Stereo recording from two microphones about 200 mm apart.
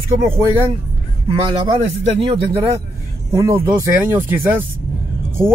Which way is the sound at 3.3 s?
15° right (ahead or behind).